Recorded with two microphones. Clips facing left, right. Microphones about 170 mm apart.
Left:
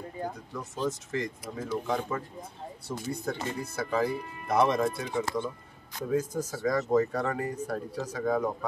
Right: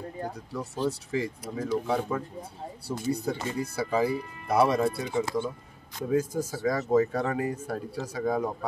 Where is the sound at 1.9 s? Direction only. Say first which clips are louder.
Right 2 dB; 5° right (ahead or behind).